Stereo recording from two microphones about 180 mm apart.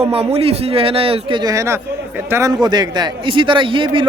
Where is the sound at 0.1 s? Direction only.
35° right (ahead or behind).